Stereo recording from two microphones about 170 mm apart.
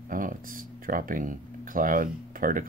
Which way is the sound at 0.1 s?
55° right (ahead or behind).